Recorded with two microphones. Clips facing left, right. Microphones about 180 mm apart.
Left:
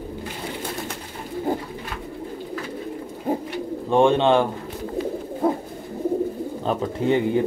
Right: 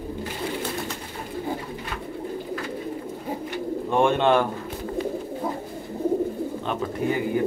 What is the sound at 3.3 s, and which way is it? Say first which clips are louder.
Bird: left 8 dB; 55° left (ahead or behind).